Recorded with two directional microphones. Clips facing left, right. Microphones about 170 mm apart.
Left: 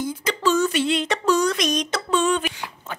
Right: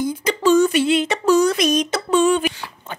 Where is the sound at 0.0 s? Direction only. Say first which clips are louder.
Right 4 dB; 15° right (ahead or behind).